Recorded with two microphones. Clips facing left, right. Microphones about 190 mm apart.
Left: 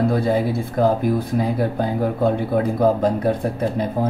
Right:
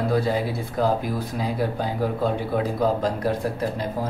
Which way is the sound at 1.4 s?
55° left (ahead or behind).